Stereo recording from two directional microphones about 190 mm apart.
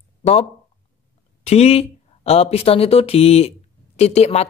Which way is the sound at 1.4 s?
35° left (ahead or behind).